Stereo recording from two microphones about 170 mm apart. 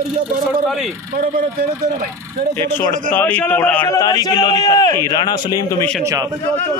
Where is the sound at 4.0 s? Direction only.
25° left (ahead or behind).